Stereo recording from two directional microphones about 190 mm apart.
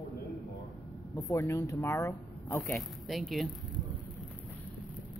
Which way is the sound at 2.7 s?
Centre (ahead or behind).